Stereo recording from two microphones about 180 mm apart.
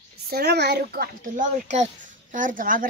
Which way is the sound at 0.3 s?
65° right (ahead or behind).